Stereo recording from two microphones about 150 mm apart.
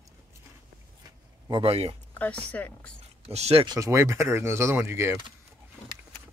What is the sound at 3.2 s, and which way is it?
Speech, 45° right (ahead or behind).